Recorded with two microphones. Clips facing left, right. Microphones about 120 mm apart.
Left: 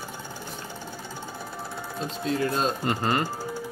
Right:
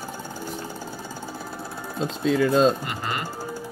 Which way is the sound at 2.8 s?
35° left (ahead or behind).